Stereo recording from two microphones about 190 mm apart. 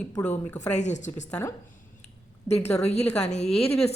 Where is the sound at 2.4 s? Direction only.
35° left (ahead or behind).